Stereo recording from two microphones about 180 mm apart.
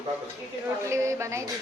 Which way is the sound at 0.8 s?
15° right (ahead or behind).